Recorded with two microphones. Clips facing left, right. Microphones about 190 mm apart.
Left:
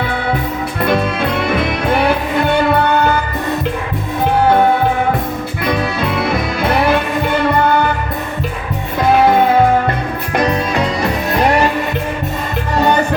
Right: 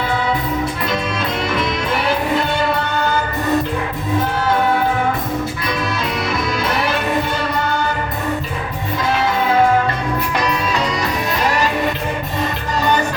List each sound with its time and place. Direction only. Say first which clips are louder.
0.8 s music: left 6 dB; 60° left (ahead or behind)
5.6 s music: left 4 dB; 60° left (ahead or behind)
9.0 s music: left 8 dB; 55° left (ahead or behind)
12.7 s music: left 4 dB; 60° left (ahead or behind)